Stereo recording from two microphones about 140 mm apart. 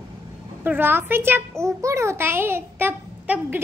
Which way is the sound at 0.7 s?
15° right (ahead or behind).